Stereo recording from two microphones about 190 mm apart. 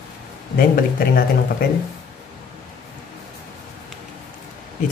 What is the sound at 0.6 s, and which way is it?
Speech, 50° left (ahead or behind).